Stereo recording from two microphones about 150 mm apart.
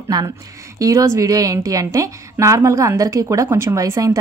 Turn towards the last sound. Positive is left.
turn(degrees=-20)  # may be behind; listen again after turning